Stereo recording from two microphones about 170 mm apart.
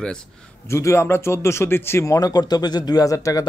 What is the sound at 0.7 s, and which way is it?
Speech, 15° left (ahead or behind).